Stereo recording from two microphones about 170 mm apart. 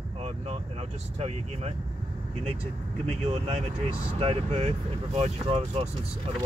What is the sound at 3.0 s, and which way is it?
Speech, 40° right (ahead or behind).